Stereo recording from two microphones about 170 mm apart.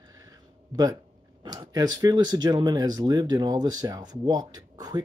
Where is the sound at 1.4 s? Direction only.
25° right (ahead or behind).